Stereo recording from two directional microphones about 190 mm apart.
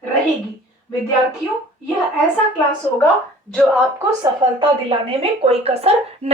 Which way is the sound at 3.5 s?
Centre (ahead or behind).